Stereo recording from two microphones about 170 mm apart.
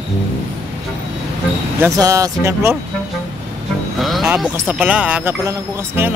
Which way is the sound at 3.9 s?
Centre (ahead or behind).